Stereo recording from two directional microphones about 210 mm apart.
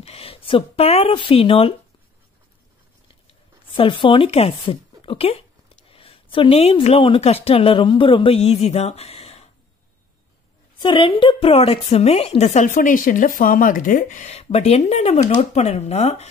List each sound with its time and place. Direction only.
0.0 s speech: 30° left (ahead or behind)
3.3 s speech: 25° left (ahead or behind)
10.8 s a woman's voice: 25° left (ahead or behind)